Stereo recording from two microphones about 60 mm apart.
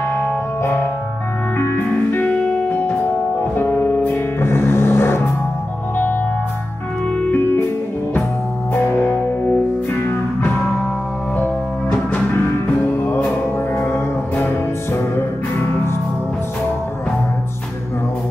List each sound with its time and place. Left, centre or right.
1.6 s music: left
2.2 s music: left
4.4 s music: left
7.2 s music: left
8.8 s music: left
12.8 s music: left